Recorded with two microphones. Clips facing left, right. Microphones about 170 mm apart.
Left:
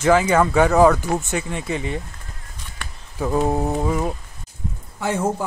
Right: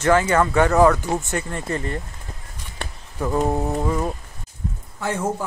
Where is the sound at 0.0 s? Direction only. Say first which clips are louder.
Left 1 dB; 10° left (ahead or behind).